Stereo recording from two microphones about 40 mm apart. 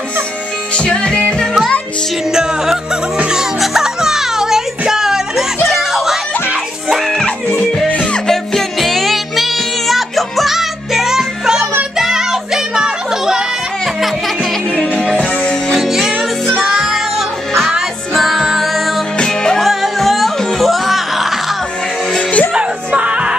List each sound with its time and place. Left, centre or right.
0.7 s music: left
2.3 s music: centre
7.9 s music: left
8.3 s music: centre
15.8 s music: centre
18.1 s music: centre
19.1 s music: centre
19.6 s music: centre
22.8 s music: right